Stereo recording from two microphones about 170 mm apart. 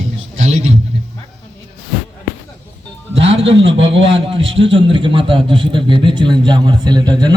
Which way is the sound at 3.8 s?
30° right (ahead or behind).